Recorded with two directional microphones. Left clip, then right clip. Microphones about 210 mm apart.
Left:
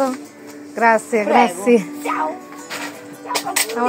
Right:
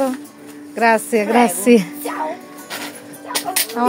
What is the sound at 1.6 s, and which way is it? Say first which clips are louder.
Speech: right 1 dB; 50° right (ahead or behind).